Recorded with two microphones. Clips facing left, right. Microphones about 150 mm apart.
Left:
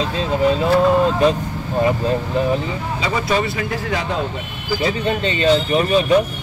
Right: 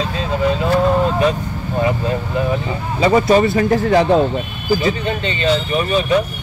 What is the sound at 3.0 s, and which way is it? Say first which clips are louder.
Speech: right 9 dB; 50° right (ahead or behind).